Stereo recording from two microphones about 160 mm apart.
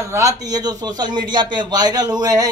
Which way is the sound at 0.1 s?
20° right (ahead or behind).